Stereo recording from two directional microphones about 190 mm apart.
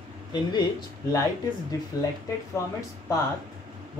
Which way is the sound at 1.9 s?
20° left (ahead or behind).